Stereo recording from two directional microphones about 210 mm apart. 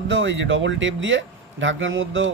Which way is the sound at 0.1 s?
60° right (ahead or behind).